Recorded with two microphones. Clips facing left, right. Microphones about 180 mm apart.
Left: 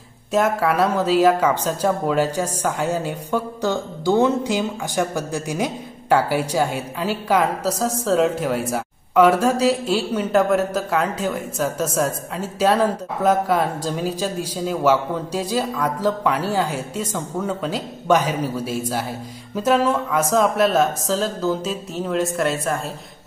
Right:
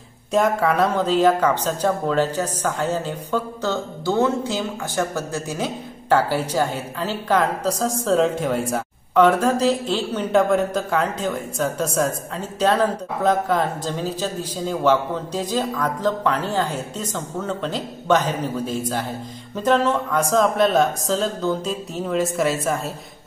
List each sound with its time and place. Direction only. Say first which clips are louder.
0.3 s speech: even; 5° left (ahead or behind)